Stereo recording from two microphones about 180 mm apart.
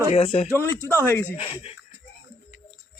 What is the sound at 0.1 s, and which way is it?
Speech, 35° left (ahead or behind).